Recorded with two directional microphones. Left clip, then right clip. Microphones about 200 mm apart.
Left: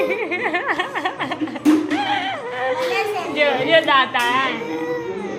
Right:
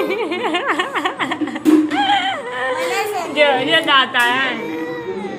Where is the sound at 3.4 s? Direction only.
10° right (ahead or behind).